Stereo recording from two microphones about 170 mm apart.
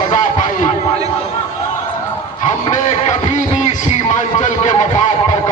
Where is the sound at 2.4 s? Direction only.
45° left (ahead or behind).